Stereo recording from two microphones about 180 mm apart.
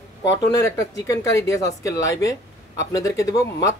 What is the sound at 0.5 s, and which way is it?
Speech, 15° left (ahead or behind).